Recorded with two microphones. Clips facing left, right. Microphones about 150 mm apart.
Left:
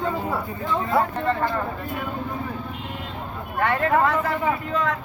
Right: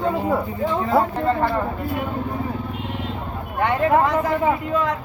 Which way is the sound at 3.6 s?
20° right (ahead or behind).